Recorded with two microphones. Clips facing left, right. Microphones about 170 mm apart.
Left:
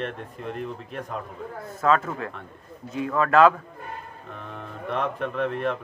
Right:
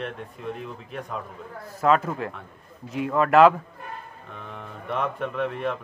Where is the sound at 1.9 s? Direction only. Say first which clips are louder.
Right 1 dB; 20° right (ahead or behind).